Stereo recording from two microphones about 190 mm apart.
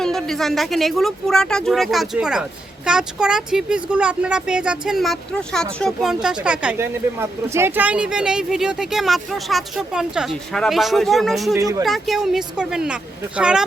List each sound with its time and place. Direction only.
0.0 s a woman's voice: centre (ahead or behind)
11.5 s speech: 15° right (ahead or behind)
11.9 s a woman's voice: centre (ahead or behind)